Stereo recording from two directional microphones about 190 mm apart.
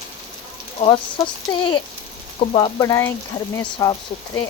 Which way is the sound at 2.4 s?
30° left (ahead or behind).